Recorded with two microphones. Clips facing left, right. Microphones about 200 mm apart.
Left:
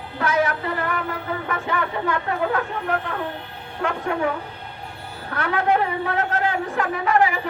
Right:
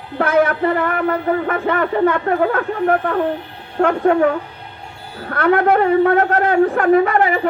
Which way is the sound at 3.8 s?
60° right (ahead or behind).